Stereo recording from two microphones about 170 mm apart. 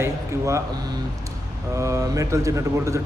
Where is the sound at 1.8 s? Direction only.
20° right (ahead or behind).